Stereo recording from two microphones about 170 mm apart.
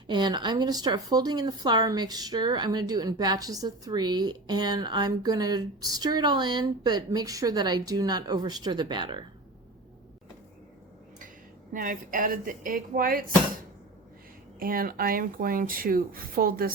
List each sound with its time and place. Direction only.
0.1 s speech: 25° right (ahead or behind)
11.7 s speech: 50° right (ahead or behind)
14.6 s speech: 60° right (ahead or behind)